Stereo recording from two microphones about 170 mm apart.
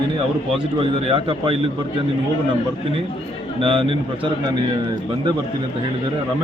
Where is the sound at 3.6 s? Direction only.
30° right (ahead or behind).